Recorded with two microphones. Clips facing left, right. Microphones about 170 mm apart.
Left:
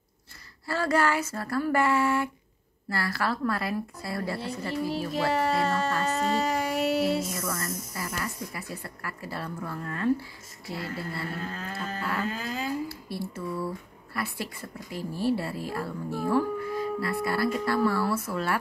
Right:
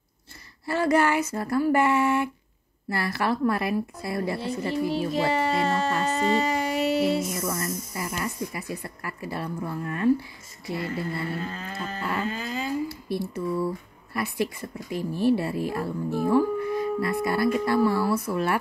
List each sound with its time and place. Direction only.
0.7 s speech: 20° right (ahead or behind)
5.6 s cattle: centre (ahead or behind)
6.0 s a sound: centre (ahead or behind)
7.3 s speech: 20° right (ahead or behind)
11.2 s cattle: 5° right (ahead or behind)
12.3 s dog: centre (ahead or behind)
12.8 s a sound: 15° right (ahead or behind)
14.1 s speech: 20° right (ahead or behind)